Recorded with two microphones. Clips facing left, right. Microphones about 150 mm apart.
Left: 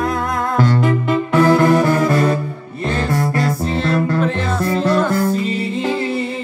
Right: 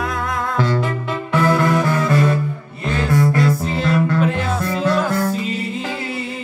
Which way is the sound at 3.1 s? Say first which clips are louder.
Right 6 dB; 40° left (ahead or behind).